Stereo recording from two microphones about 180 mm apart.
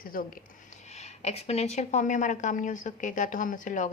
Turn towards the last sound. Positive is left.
turn(degrees=45)  # may be behind; listen again after turning